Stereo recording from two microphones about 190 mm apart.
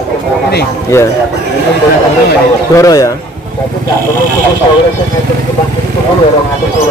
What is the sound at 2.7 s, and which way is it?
Speech, 15° left (ahead or behind).